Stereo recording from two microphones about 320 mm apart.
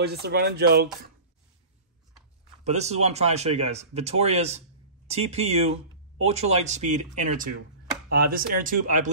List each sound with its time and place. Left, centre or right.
0.0 s speech: right
2.6 s speech: right